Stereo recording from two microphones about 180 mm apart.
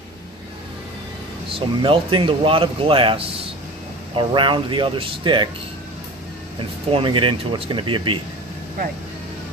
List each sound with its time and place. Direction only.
1.8 s speech: 25° right (ahead or behind)
6.9 s speech: 30° right (ahead or behind)